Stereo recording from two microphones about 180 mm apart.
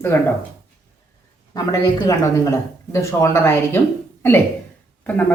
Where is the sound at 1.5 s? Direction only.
20° left (ahead or behind).